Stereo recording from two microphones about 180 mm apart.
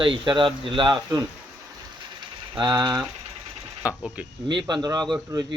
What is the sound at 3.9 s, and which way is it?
Speech, 5° right (ahead or behind).